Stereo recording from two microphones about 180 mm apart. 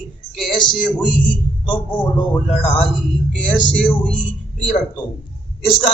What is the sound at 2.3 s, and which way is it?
A man's voice, 5° left (ahead or behind).